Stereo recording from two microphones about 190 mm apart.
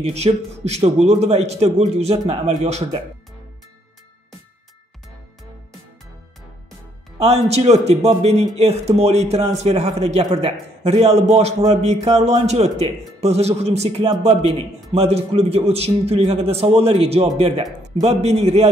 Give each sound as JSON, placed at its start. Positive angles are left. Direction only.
{"t": 0.0, "sound": "speech", "side_deg": -35}
{"t": 7.2, "sound": "speech", "side_deg": -35}